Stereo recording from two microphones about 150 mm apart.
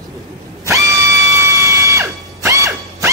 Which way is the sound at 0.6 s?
20° right (ahead or behind).